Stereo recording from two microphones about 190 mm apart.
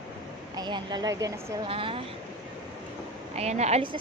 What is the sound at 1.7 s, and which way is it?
Speech, 30° right (ahead or behind).